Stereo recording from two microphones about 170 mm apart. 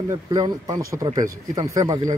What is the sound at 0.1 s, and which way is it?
Speech, 20° right (ahead or behind).